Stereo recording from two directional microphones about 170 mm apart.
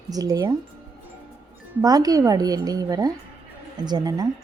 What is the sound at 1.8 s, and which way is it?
A woman's voice, 20° right (ahead or behind).